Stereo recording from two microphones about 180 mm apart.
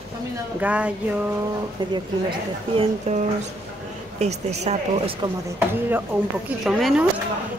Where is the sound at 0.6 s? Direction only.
5° right (ahead or behind).